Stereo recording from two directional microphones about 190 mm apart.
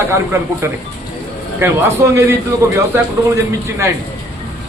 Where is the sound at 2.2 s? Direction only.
15° right (ahead or behind).